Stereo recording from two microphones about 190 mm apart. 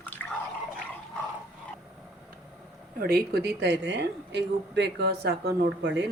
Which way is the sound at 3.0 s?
55° right (ahead or behind).